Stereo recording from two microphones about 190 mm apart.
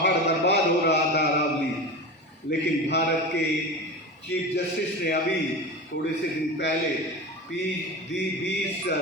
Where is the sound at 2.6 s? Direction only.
65° left (ahead or behind).